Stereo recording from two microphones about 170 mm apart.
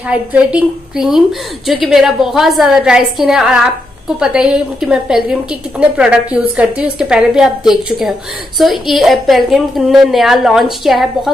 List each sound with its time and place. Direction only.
0.1 s a woman's voice: 5° right (ahead or behind)